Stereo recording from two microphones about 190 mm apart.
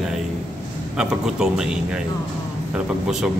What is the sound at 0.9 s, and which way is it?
Speech, 5° right (ahead or behind).